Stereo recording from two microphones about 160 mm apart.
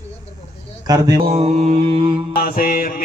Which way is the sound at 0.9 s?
25° right (ahead or behind).